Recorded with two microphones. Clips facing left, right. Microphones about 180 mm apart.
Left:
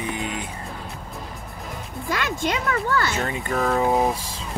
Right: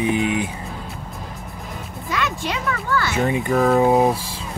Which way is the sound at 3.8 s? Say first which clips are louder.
Right 5 dB; 20° right (ahead or behind).